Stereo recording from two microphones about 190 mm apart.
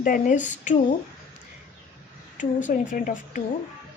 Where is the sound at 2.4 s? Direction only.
40° left (ahead or behind).